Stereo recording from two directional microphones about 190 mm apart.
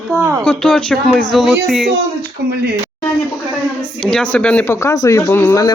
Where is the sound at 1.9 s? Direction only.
55° right (ahead or behind).